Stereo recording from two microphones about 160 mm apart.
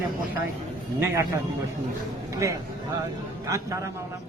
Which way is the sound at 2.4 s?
20° right (ahead or behind).